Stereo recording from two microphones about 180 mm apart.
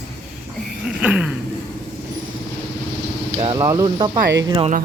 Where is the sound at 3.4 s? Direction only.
20° right (ahead or behind).